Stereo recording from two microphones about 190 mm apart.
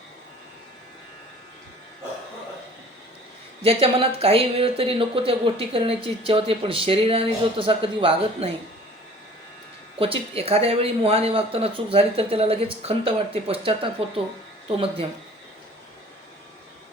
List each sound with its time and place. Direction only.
3.6 s speech: 30° right (ahead or behind)
10.0 s speech: 30° right (ahead or behind)